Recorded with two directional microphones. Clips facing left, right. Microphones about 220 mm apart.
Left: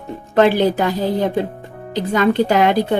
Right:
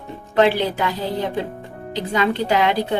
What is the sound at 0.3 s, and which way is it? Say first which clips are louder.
Speech: left 4 dB; 45° left (ahead or behind).